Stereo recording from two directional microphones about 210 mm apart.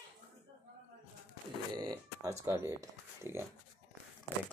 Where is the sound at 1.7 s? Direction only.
20° right (ahead or behind).